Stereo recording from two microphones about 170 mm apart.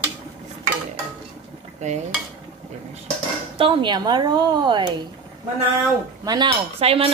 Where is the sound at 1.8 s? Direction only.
45° right (ahead or behind).